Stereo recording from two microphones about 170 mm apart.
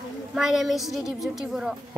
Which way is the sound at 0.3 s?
Centre (ahead or behind).